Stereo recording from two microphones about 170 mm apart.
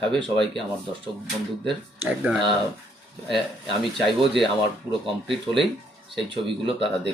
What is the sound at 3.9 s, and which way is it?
Speech, centre (ahead or behind).